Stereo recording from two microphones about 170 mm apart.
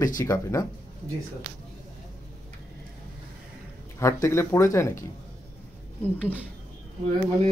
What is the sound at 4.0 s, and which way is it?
Speech, 15° left (ahead or behind).